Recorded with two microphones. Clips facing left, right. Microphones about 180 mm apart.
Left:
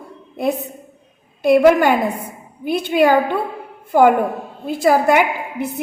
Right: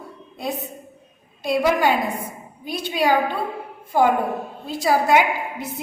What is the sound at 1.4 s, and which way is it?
A woman's voice, 55° left (ahead or behind).